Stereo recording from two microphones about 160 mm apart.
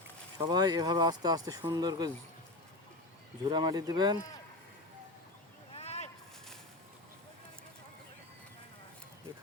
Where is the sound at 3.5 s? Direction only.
25° right (ahead or behind).